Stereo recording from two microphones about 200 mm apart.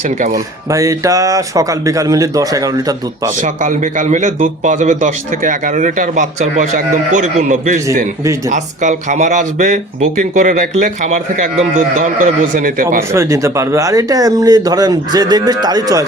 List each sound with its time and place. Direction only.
0.2 s speech: 40° right (ahead or behind)
0.7 s speech: 15° right (ahead or behind)
3.4 s speech: 40° right (ahead or behind)
13.0 s speech: 15° right (ahead or behind)